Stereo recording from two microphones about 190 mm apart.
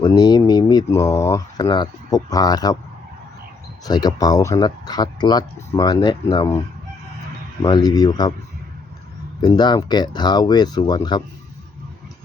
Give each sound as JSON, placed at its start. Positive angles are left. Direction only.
{"t": 0.0, "sound": "speech", "side_deg": 20}
{"t": 3.8, "sound": "speech", "side_deg": 20}
{"t": 7.6, "sound": "speech", "side_deg": 20}
{"t": 9.4, "sound": "speech", "side_deg": 20}